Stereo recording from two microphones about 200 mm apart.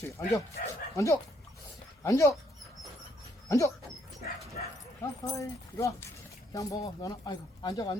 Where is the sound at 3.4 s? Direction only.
15° left (ahead or behind).